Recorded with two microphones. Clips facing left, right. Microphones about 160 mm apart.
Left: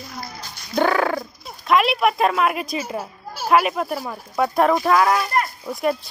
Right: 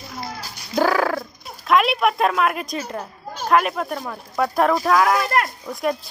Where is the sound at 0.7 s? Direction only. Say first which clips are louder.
Even; centre (ahead or behind).